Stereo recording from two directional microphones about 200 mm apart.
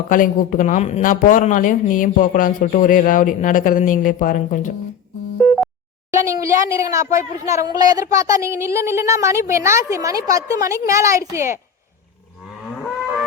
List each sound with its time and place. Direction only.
0.1 s speech: 40° left (ahead or behind)
6.1 s speech: 15° right (ahead or behind)